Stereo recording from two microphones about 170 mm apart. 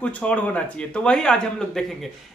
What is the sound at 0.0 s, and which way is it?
Speech, 10° left (ahead or behind).